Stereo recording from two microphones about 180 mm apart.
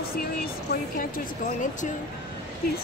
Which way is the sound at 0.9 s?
45° left (ahead or behind).